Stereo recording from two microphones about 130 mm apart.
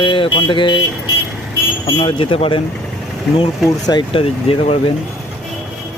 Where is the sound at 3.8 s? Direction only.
40° left (ahead or behind).